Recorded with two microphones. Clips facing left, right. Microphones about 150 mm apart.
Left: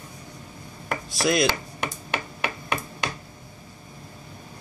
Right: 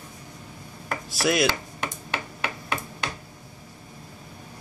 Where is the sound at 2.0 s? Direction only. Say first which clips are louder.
Left 2 dB; 15° left (ahead or behind).